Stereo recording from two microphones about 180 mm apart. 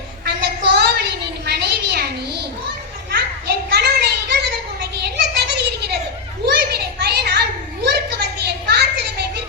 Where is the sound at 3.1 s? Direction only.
65° right (ahead or behind).